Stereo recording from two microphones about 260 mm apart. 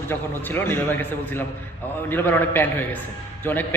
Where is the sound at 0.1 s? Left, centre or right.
Centre.